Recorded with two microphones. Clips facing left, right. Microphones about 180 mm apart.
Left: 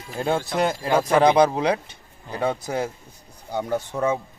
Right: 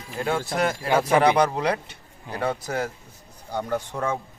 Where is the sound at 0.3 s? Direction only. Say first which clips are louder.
Left 2 dB; 20° left (ahead or behind).